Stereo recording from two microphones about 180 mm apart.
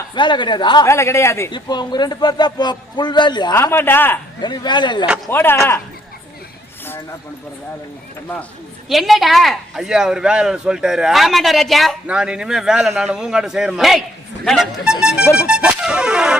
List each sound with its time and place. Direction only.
0.1 s a man's voice: 25° left (ahead or behind)
3.5 s speech: 15° left (ahead or behind)
4.4 s a man's voice: 25° left (ahead or behind)
5.3 s speech: 10° left (ahead or behind)
8.9 s speech: centre (ahead or behind)
15.0 s music: 5° right (ahead or behind)